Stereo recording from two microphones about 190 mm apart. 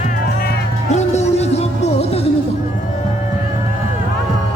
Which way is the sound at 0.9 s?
35° left (ahead or behind).